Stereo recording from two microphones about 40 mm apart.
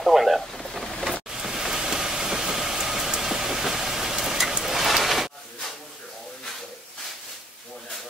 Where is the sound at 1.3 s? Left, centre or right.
Centre.